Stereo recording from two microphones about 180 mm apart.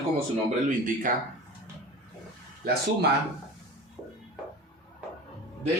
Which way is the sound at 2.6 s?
60° right (ahead or behind).